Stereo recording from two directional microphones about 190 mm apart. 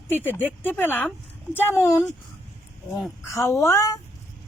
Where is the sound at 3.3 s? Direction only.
15° left (ahead or behind).